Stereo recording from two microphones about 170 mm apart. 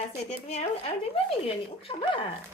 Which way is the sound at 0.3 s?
40° left (ahead or behind).